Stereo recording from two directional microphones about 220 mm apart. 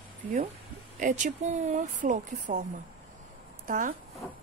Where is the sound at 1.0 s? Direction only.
35° right (ahead or behind).